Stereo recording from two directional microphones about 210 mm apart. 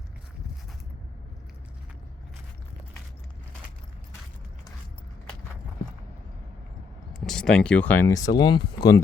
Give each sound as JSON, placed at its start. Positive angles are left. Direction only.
{"t": 7.1, "sound": "speech", "side_deg": 0}